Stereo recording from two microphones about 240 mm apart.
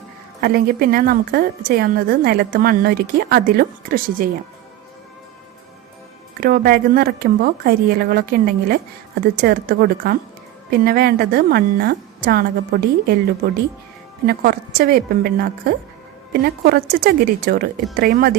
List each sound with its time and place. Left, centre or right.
0.4 s a woman's voice: right
6.4 s a woman's voice: right
14.3 s a woman's voice: right